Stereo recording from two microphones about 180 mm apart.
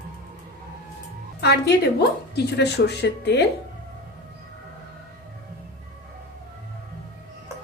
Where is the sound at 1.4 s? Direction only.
65° left (ahead or behind).